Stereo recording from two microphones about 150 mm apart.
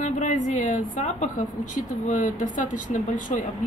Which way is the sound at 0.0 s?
55° left (ahead or behind).